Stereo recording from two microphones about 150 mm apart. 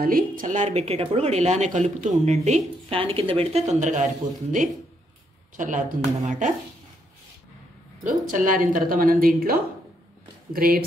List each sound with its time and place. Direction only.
0.0 s a woman's voice: 65° right (ahead or behind)
8.0 s a woman's voice: 60° right (ahead or behind); by 10.8 s 80° right